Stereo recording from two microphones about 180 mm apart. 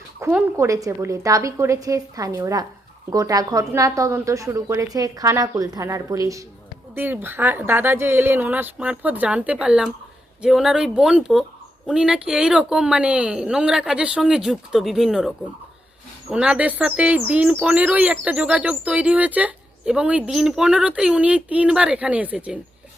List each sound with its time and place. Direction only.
0.2 s speech: 15° right (ahead or behind)
16.3 s speech: 5° right (ahead or behind)